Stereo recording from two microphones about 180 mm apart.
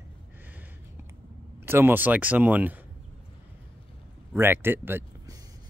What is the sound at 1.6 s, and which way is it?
Speech, 10° right (ahead or behind).